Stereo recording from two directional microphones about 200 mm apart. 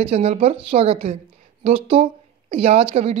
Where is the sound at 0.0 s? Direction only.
30° right (ahead or behind).